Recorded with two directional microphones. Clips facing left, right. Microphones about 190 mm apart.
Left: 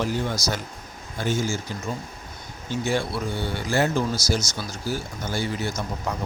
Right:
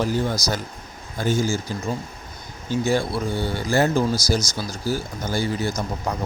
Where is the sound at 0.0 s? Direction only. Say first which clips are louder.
Right 3 dB; 40° right (ahead or behind).